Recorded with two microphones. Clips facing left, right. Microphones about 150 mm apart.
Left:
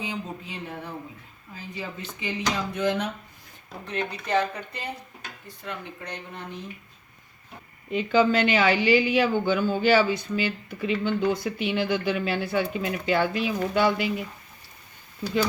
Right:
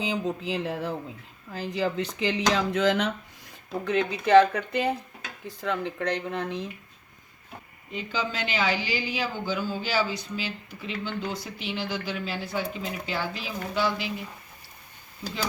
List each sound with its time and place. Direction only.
0.0 s speech: 90° right
7.9 s speech: 60° left (ahead or behind)